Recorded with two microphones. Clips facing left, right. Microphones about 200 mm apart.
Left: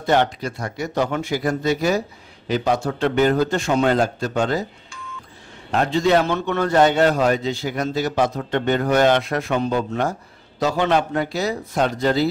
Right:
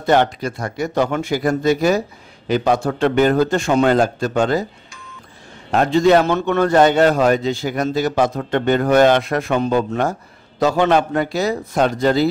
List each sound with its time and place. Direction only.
0.0 s a man's voice: 50° right (ahead or behind)
5.7 s a man's voice: 50° right (ahead or behind)